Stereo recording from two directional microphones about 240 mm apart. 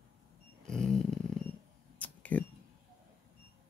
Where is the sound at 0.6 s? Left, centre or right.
Centre.